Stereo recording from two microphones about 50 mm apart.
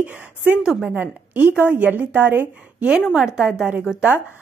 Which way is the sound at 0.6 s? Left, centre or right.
Centre.